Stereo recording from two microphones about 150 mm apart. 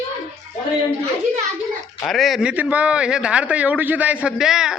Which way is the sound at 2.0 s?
Centre (ahead or behind).